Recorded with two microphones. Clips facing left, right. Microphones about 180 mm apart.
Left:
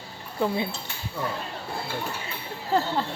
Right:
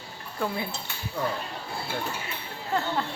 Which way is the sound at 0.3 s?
20° left (ahead or behind).